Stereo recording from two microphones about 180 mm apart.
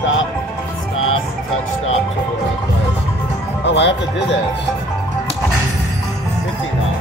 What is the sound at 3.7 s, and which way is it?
Music, 80° left.